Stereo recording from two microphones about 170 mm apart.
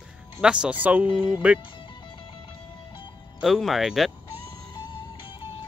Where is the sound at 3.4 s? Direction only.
Centre (ahead or behind).